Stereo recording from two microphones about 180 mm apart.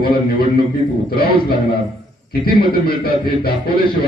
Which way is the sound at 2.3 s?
55° left (ahead or behind).